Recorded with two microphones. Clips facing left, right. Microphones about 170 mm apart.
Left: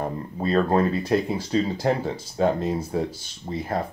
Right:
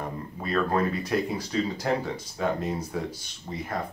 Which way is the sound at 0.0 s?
35° left (ahead or behind).